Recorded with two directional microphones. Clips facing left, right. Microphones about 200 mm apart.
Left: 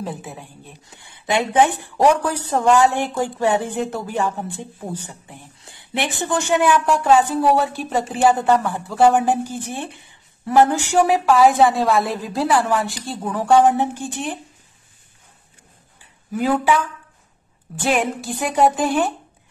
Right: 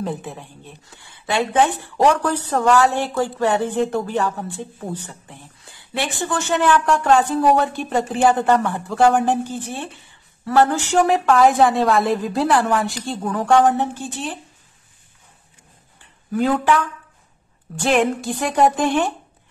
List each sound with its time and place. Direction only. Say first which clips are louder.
0.0 s a woman's voice: right 3 dB; 5° left (ahead or behind)
0.8 s a woman's voice: left 2 dB; 20° left (ahead or behind)
16.3 s a woman's voice: right 1 dB; 5° left (ahead or behind)
17.8 s a woman's voice: right 3 dB; centre (ahead or behind)